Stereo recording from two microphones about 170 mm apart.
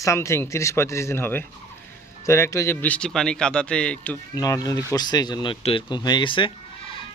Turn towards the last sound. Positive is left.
turn(degrees=30)  # may be behind; listen again after turning